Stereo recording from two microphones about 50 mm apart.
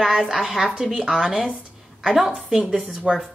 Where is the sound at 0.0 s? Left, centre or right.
Centre.